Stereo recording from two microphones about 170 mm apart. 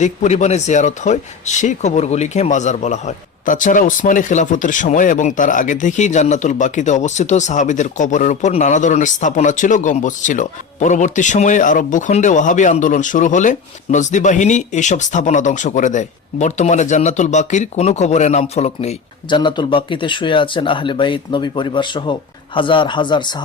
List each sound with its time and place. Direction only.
0.0 s speech: 45° left (ahead or behind)
19.4 s speech: 30° left (ahead or behind)